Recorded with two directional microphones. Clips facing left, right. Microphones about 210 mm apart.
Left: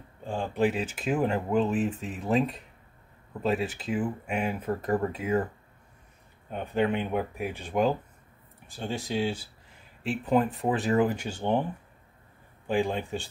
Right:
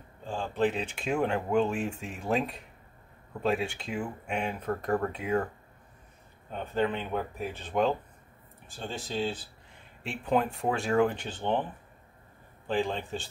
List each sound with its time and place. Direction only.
0.3 s speech: 10° left (ahead or behind)
6.5 s speech: 15° left (ahead or behind)
12.6 s speech: 10° left (ahead or behind)